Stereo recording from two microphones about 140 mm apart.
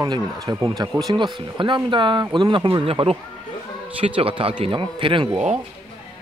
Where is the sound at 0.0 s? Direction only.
25° right (ahead or behind).